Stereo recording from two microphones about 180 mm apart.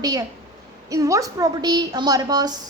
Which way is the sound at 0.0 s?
20° right (ahead or behind).